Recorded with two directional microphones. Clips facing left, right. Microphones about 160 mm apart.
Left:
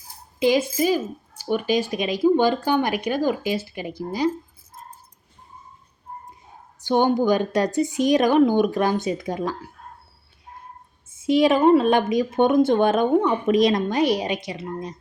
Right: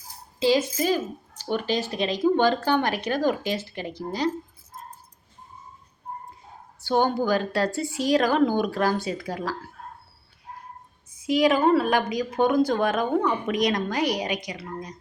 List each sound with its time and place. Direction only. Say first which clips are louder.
0.3 s a woman's voice: left 2 dB; 15° left (ahead or behind)
6.8 s speech: left 4 dB; 15° left (ahead or behind)
11.1 s speech: left 3 dB; 25° left (ahead or behind)